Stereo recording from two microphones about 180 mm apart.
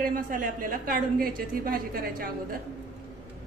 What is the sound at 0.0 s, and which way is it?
A woman's voice, 50° right (ahead or behind).